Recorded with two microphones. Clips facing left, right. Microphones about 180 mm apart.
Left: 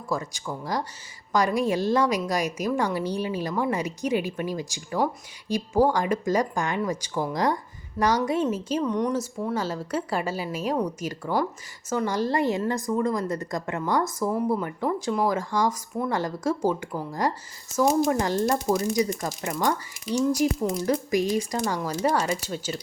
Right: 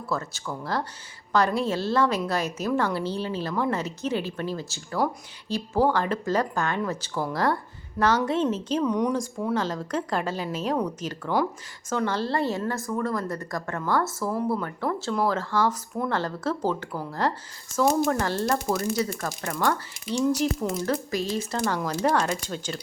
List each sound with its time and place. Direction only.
0.1 s speech: 15° left (ahead or behind)